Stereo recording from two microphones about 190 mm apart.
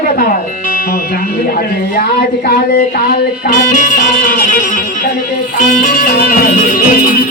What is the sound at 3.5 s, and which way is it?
Speech, 45° left (ahead or behind).